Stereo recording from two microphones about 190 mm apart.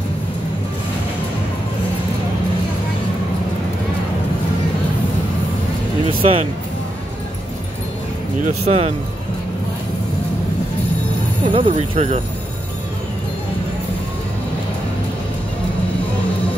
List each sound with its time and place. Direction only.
6.0 s music: 30° right (ahead or behind)
8.5 s speech: 35° right (ahead or behind)
11.4 s speech: 25° right (ahead or behind)
11.7 s speech: 40° right (ahead or behind)